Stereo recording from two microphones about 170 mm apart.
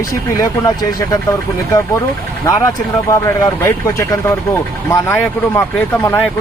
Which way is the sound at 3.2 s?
15° left (ahead or behind).